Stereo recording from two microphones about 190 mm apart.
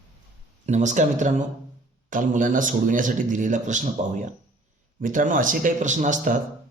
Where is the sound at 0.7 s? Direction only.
40° right (ahead or behind).